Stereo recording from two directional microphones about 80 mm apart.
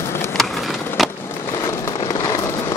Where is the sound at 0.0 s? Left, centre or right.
Left.